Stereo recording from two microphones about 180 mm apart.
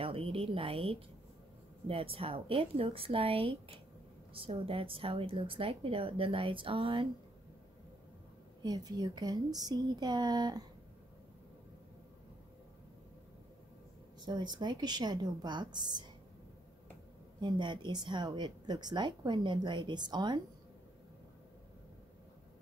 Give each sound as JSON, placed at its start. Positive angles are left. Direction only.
{"t": 0.0, "sound": "a woman's voice", "side_deg": -30}
{"t": 8.6, "sound": "a woman's voice", "side_deg": -20}
{"t": 14.2, "sound": "a woman's voice", "side_deg": -25}
{"t": 17.4, "sound": "a woman's voice", "side_deg": -25}